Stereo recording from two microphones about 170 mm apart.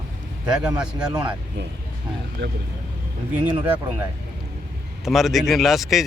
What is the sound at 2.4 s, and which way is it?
Speech, 90° right.